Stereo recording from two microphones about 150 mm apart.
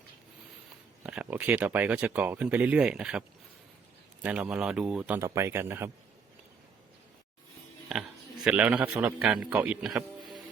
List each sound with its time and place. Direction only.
1.0 s speech: 10° right (ahead or behind)
5.2 s speech: 20° right (ahead or behind)
7.9 s speech: centre (ahead or behind)